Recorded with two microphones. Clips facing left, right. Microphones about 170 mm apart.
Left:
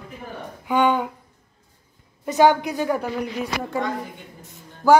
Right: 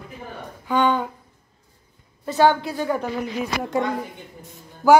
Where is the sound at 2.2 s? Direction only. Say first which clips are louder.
Left 1 dB; 15° left (ahead or behind).